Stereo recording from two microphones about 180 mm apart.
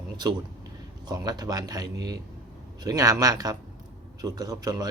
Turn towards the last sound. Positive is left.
turn(degrees=-20)  # may be behind; listen again after turning